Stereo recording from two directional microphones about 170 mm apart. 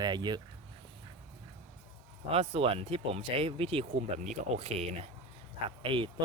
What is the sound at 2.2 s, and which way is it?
Speech, 35° right (ahead or behind).